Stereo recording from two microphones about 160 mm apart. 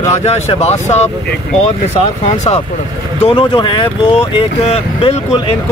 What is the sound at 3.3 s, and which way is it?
Speech, 30° left (ahead or behind).